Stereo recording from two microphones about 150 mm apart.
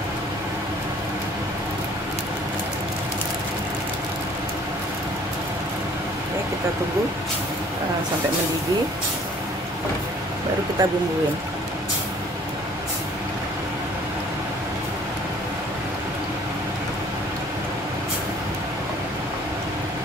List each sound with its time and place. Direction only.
10.8 s speech: 25° right (ahead or behind)